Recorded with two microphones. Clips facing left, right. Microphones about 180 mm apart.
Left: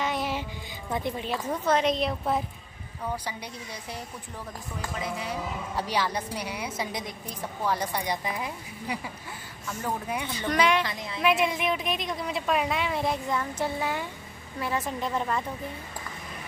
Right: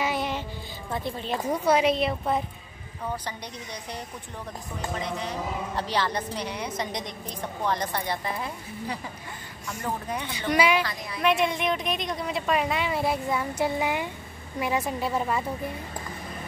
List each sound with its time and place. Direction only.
0.0 s music: 5° right (ahead or behind)
0.9 s speech: 15° left (ahead or behind)
1.5 s a woman's voice: 10° right (ahead or behind)
4.9 s a woman's voice: 5° left (ahead or behind)
10.3 s a woman's voice: 10° right (ahead or behind)
10.8 s a woman's voice: 20° left (ahead or behind)
11.1 s a woman's voice: centre (ahead or behind)